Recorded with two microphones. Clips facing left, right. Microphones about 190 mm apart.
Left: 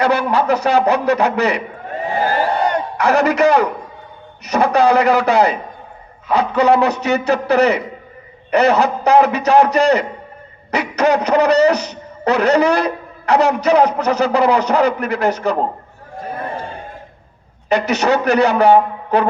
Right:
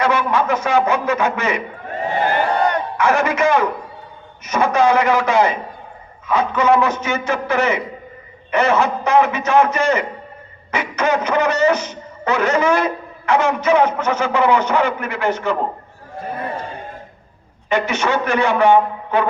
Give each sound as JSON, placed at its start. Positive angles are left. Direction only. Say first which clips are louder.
{"t": 0.0, "sound": "speech", "louder": "left 2 dB", "side_deg": 35}
{"t": 3.0, "sound": "speech", "louder": "left 3 dB", "side_deg": 35}
{"t": 17.7, "sound": "speech", "louder": "left 3 dB", "side_deg": 40}